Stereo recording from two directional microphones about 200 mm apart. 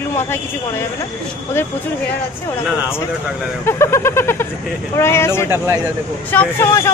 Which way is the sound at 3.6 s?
15° left (ahead or behind).